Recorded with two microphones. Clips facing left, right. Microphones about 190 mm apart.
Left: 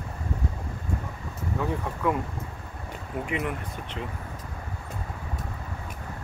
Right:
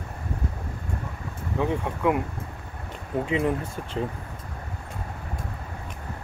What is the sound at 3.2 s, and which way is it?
Speech, 30° right (ahead or behind).